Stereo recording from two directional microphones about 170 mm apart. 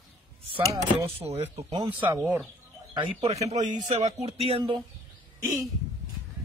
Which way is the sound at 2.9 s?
35° right (ahead or behind).